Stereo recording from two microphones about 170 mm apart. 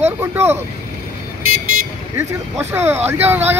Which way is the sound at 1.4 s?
60° right (ahead or behind).